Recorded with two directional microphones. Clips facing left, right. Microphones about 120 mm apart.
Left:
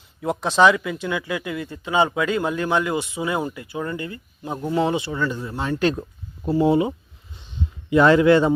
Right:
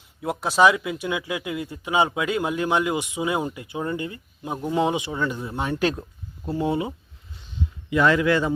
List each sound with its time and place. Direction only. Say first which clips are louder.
0.2 s speech: left 2 dB; 5° right (ahead or behind)
6.7 s speech: left 6 dB; 25° left (ahead or behind)